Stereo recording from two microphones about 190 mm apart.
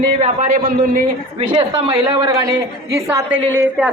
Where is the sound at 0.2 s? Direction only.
40° right (ahead or behind).